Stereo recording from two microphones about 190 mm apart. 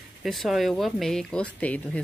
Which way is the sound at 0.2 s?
Centre (ahead or behind).